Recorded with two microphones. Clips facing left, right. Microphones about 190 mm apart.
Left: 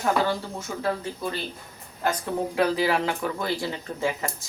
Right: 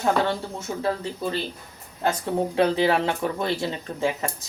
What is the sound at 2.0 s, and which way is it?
Speech, 25° right (ahead or behind).